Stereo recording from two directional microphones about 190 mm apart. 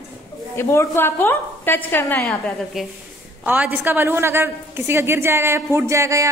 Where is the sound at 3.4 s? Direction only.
10° right (ahead or behind).